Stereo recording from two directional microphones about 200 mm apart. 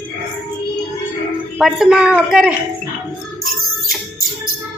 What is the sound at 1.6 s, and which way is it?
Speech, 5° right (ahead or behind).